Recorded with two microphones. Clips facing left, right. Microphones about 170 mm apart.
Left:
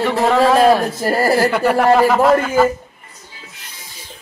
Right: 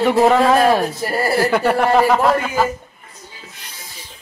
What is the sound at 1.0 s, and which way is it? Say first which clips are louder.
Speech: left 9 dB; 40° left (ahead or behind).